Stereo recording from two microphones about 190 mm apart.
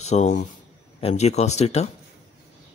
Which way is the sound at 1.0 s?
35° left (ahead or behind).